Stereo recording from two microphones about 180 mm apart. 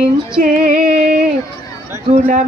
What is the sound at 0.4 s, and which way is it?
Female singing, 50° right (ahead or behind).